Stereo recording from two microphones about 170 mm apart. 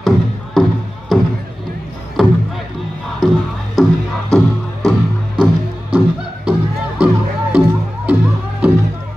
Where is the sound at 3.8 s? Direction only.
Centre (ahead or behind).